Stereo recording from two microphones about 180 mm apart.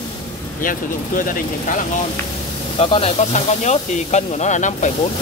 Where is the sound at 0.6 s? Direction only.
50° left (ahead or behind).